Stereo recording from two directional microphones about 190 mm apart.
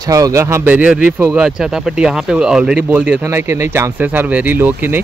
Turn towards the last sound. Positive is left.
turn(degrees=-10)  # may be behind; listen again after turning